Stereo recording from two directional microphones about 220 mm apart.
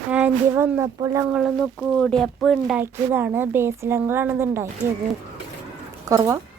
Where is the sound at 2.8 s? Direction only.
10° right (ahead or behind).